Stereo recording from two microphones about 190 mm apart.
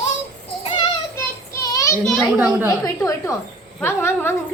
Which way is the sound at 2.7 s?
15° left (ahead or behind).